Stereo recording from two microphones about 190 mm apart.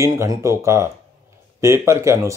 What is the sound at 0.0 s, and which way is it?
Speech, 15° right (ahead or behind).